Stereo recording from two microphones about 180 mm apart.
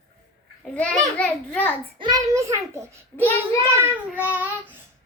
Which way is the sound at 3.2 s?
10° left (ahead or behind).